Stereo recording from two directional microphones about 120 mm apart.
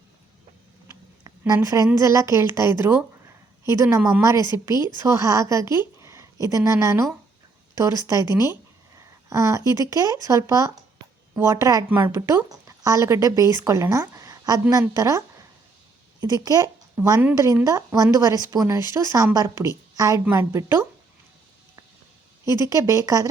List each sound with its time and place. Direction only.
1.2 s a sound: 30° right (ahead or behind)
2.0 s a woman's voice: 25° right (ahead or behind)
17.0 s speech: 15° right (ahead or behind)
17.4 s speech: 30° right (ahead or behind)
22.4 s speech: 25° right (ahead or behind)